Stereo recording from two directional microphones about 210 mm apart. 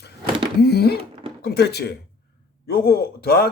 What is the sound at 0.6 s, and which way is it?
Speech, 50° left (ahead or behind).